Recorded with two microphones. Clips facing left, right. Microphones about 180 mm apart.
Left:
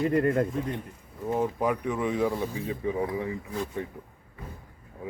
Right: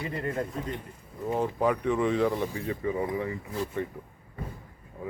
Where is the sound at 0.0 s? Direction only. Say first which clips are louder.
Left 8 dB; 45° left (ahead or behind).